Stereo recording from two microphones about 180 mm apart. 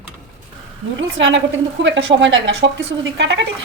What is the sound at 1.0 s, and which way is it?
A woman's voice, 90° right.